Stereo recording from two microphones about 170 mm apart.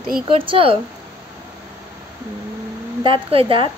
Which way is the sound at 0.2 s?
30° right (ahead or behind).